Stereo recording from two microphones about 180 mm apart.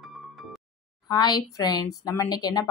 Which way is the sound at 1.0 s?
25° left (ahead or behind).